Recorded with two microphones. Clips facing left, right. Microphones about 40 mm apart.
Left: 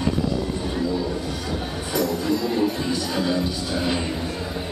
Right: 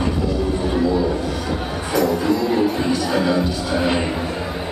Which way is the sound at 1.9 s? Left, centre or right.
Centre.